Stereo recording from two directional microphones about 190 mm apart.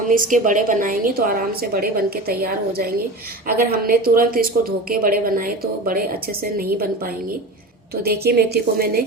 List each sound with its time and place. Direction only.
0.1 s a woman's voice: 45° right (ahead or behind)